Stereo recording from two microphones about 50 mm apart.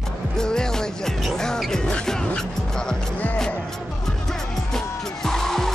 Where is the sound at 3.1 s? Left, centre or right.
Left.